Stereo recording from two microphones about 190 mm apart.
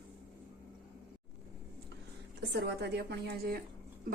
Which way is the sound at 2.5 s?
60° right (ahead or behind).